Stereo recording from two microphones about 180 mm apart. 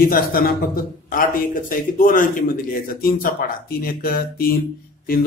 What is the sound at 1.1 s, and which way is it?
Speech, 50° left (ahead or behind).